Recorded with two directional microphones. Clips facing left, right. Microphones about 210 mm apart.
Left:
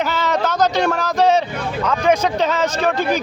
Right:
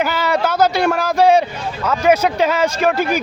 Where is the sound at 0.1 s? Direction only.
10° right (ahead or behind).